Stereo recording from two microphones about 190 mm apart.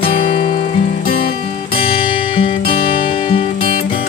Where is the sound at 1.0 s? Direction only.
50° left (ahead or behind).